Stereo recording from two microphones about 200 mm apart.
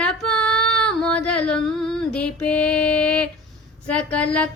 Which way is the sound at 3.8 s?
5° left (ahead or behind).